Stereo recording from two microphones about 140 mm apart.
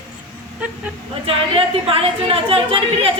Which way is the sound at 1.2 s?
40° right (ahead or behind).